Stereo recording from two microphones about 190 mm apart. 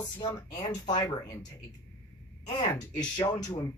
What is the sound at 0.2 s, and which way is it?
Speech, 15° left (ahead or behind).